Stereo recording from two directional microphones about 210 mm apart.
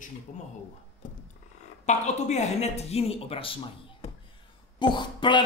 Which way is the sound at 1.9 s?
35° left (ahead or behind).